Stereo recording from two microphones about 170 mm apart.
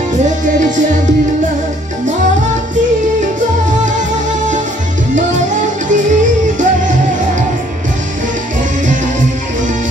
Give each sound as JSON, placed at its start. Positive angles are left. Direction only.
{"t": 5.1, "sound": "music", "side_deg": -50}